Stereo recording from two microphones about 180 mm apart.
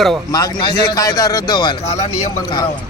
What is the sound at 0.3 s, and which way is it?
Speech, 20° left (ahead or behind).